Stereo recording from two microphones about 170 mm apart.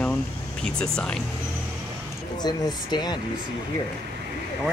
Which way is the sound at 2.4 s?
25° left (ahead or behind).